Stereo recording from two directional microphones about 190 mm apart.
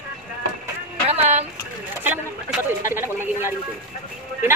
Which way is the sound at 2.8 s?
10° right (ahead or behind).